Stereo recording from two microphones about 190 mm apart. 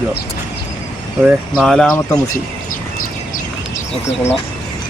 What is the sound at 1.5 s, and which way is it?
Speech, 5° left (ahead or behind).